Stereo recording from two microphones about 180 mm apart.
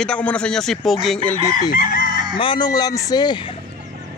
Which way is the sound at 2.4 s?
25° left (ahead or behind).